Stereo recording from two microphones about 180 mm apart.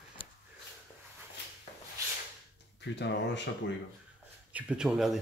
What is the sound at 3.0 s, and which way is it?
Speech, 75° left (ahead or behind).